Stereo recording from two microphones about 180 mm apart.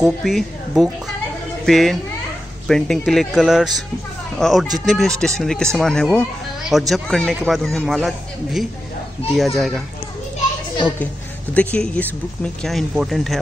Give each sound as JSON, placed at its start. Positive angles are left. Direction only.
{"t": 0.0, "sound": "a man's voice", "side_deg": 0}
{"t": 11.5, "sound": "a man's voice", "side_deg": 5}